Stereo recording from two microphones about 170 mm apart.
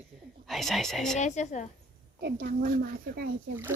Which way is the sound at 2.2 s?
60° right (ahead or behind).